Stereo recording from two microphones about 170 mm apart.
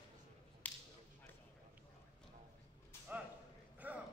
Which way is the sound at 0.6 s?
10° left (ahead or behind).